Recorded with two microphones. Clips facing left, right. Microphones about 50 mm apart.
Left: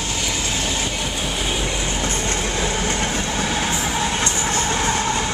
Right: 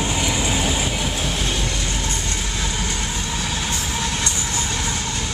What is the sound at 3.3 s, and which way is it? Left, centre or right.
Vehicle, left.